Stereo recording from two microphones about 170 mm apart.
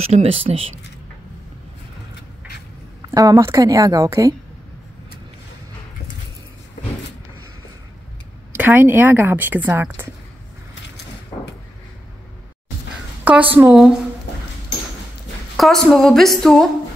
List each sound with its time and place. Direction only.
0.0 s speech: 40° right (ahead or behind)
3.1 s a woman's voice: 20° right (ahead or behind)
8.5 s a woman's voice: 10° right (ahead or behind)
13.2 s a sound: 10° right (ahead or behind)
13.6 s a woman's voice: centre (ahead or behind)
15.5 s a woman's voice: centre (ahead or behind)